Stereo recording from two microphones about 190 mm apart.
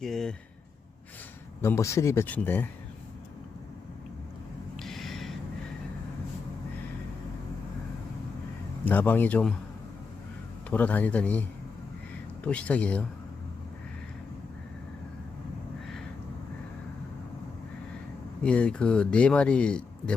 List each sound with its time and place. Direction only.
0.0 s speech: centre (ahead or behind)
1.6 s speech: 15° left (ahead or behind)
4.8 s a sound: centre (ahead or behind)
8.8 s speech: 10° left (ahead or behind)
10.7 s speech: 10° left (ahead or behind)
18.4 s speech: 5° left (ahead or behind)